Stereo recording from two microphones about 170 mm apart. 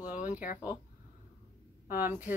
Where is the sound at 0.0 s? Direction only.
10° right (ahead or behind).